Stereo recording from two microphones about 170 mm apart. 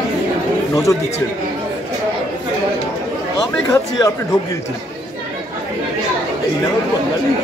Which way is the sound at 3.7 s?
20° left (ahead or behind).